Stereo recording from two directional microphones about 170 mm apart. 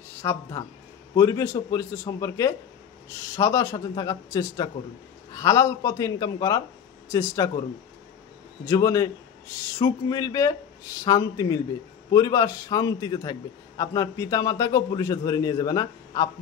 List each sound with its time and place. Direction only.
0.2 s a man's voice: 15° left (ahead or behind)
8.6 s a man's voice: 20° left (ahead or behind)